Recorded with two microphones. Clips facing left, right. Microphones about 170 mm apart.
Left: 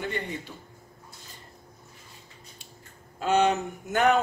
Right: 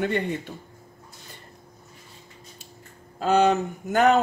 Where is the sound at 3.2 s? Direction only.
35° right (ahead or behind).